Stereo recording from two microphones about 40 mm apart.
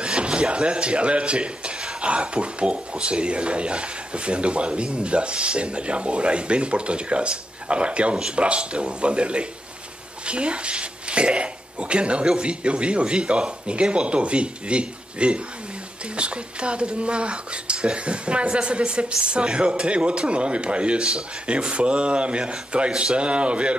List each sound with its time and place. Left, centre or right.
0.0 s speech: right